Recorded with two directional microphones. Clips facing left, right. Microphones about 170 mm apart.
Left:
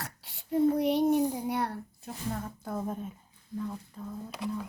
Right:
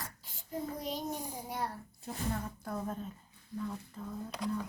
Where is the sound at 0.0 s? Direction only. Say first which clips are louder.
Left 4 dB; 70° left (ahead or behind).